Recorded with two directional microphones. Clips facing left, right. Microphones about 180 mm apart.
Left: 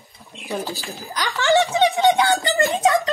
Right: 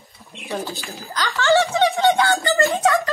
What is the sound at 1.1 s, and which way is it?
A woman's voice, 15° left (ahead or behind).